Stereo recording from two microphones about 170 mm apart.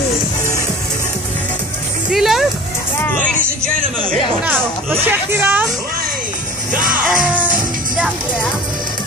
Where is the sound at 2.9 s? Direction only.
10° left (ahead or behind).